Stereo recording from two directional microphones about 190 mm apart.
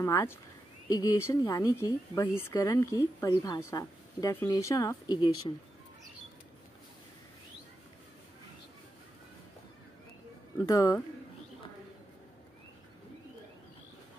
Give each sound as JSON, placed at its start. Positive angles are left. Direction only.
{"t": 0.0, "sound": "speech", "side_deg": 15}
{"t": 10.6, "sound": "speech", "side_deg": 20}